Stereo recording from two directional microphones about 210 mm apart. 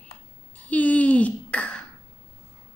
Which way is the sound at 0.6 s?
5° left (ahead or behind).